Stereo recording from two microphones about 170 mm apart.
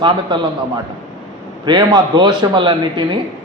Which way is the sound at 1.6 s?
25° right (ahead or behind).